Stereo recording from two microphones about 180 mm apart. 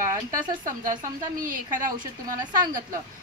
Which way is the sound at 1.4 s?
45° right (ahead or behind).